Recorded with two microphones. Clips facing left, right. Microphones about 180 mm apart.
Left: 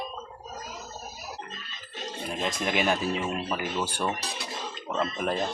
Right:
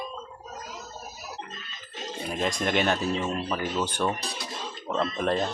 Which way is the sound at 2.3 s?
Centre (ahead or behind).